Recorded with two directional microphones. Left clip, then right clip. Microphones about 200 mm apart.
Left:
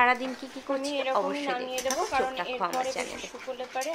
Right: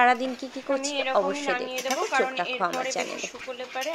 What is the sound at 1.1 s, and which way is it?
Speech, 20° right (ahead or behind).